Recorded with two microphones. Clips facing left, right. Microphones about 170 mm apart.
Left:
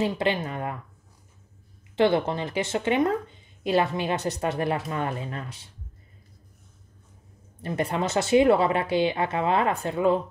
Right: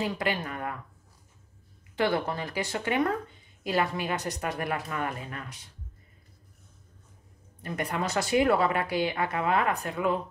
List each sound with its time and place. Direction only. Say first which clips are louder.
0.0 s speech: left 5 dB; 25° left (ahead or behind)
2.0 s speech: left 5 dB; 25° left (ahead or behind)
7.6 s speech: left 4 dB; 25° left (ahead or behind)